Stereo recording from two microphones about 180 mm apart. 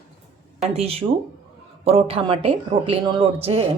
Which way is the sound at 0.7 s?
35° right (ahead or behind).